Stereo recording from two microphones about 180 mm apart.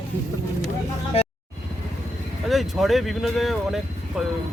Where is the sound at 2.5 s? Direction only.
Centre (ahead or behind).